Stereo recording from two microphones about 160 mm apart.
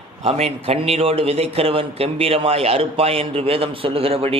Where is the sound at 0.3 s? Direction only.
40° right (ahead or behind).